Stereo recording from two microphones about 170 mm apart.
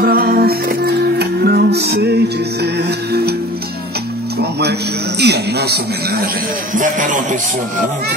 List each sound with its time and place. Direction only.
0.0 s music: 60° right (ahead or behind)
4.4 s music: 75° right (ahead or behind)
5.2 s speech: 75° right (ahead or behind)
6.7 s speech: 50° right (ahead or behind)